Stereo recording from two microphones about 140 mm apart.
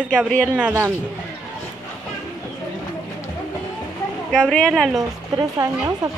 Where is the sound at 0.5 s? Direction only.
10° right (ahead or behind).